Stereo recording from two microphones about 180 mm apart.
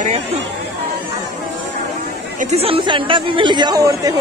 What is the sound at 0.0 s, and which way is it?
Speech, 40° right (ahead or behind).